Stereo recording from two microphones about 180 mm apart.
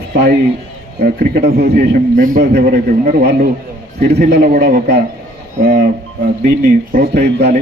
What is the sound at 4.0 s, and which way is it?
Speech, 70° right (ahead or behind).